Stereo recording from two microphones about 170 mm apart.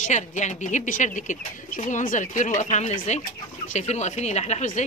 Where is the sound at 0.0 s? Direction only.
45° left (ahead or behind).